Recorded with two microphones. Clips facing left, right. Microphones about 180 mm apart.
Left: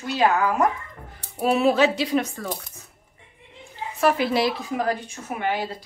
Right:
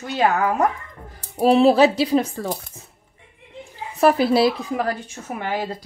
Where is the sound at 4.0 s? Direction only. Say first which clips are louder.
Right 5 dB; 35° right (ahead or behind).